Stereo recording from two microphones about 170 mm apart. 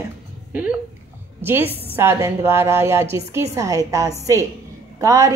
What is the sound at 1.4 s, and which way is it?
A woman's voice, 15° right (ahead or behind).